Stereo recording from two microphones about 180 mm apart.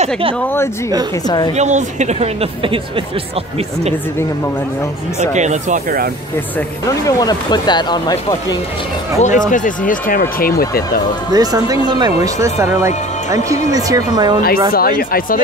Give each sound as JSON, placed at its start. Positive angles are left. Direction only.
{"t": 1.6, "sound": "a woman's voice", "side_deg": -40}
{"t": 5.3, "sound": "a woman's voice", "side_deg": -40}
{"t": 7.1, "sound": "speech", "side_deg": 20}
{"t": 9.2, "sound": "speech", "side_deg": 45}
{"t": 11.3, "sound": "a woman's voice", "side_deg": -20}
{"t": 14.7, "sound": "speech", "side_deg": 55}